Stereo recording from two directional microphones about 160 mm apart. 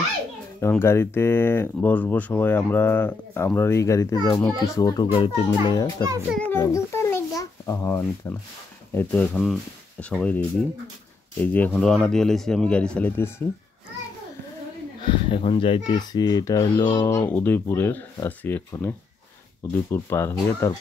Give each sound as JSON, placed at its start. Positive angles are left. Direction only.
{"t": 0.6, "sound": "speech", "side_deg": 15}
{"t": 6.5, "sound": "a child's voice", "side_deg": 15}
{"t": 15.0, "sound": "speech", "side_deg": 30}